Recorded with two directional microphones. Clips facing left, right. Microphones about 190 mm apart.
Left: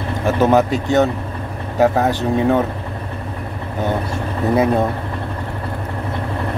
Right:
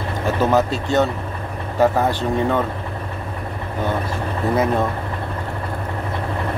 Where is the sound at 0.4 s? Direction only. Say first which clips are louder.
Left 4 dB; 15° left (ahead or behind).